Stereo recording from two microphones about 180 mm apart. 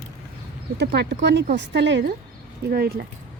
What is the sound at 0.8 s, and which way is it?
A woman's voice, 70° right (ahead or behind).